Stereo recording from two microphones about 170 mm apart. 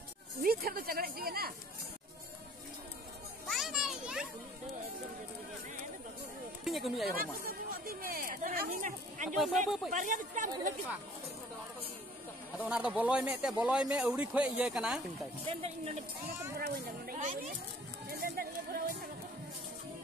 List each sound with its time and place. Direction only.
0.4 s a sound: 60° right (ahead or behind)
3.4 s children playing: centre (ahead or behind)
6.6 s a sound: centre (ahead or behind)
7.1 s chatter: 60° right (ahead or behind)
9.8 s speech: 50° right (ahead or behind)
12.5 s speech: 5° right (ahead or behind)
15.4 s speech: 40° right (ahead or behind)
16.5 s a sound: 65° right (ahead or behind)
18.1 s music: 65° right (ahead or behind)